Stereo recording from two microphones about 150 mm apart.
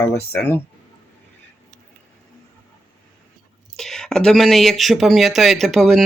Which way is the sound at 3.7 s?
5° left (ahead or behind).